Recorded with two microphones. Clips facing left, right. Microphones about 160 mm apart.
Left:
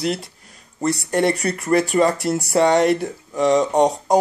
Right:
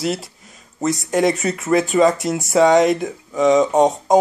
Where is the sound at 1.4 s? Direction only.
20° right (ahead or behind).